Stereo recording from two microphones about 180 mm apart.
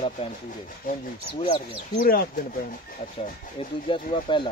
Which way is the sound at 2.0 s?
55° left (ahead or behind).